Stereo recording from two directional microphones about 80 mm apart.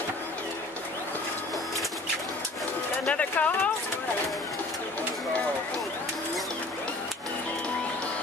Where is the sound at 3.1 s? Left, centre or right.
Centre.